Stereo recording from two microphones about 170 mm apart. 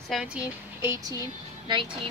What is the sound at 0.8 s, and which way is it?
A woman's voice, 20° right (ahead or behind).